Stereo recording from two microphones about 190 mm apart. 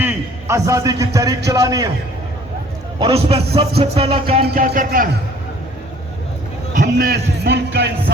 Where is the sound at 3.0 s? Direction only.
30° right (ahead or behind).